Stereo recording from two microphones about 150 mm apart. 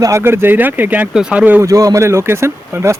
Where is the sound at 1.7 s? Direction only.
20° right (ahead or behind).